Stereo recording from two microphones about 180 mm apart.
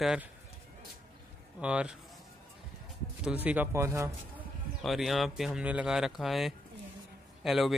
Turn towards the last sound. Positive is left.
turn(degrees=0)  # may be behind; listen again after turning